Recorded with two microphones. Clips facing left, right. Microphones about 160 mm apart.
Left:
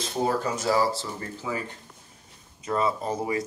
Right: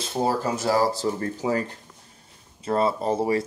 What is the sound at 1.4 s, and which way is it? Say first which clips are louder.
Speech: right 7 dB; 40° right (ahead or behind).